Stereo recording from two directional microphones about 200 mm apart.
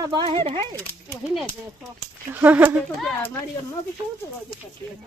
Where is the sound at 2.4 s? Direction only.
10° right (ahead or behind).